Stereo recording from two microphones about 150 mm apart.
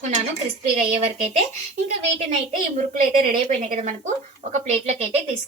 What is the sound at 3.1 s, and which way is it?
Speech, 65° right (ahead or behind).